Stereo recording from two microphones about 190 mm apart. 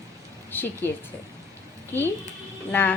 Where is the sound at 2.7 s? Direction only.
10° left (ahead or behind).